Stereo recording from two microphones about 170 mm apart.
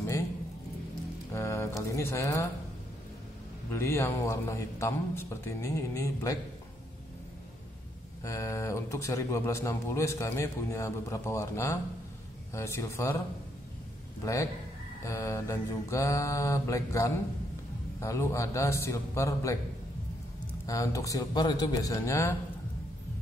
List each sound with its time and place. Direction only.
1.3 s music: 15° left (ahead or behind)
2.0 s speech: 15° left (ahead or behind)
3.7 s speech: 15° left (ahead or behind)
8.2 s speech: 20° left (ahead or behind)
14.2 s speech: 15° left (ahead or behind)
20.6 s a man's voice: 20° left (ahead or behind)